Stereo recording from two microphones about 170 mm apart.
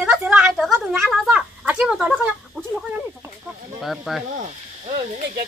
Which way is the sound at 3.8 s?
Centre (ahead or behind).